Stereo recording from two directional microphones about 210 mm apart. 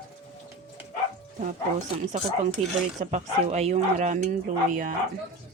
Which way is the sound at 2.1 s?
35° right (ahead or behind).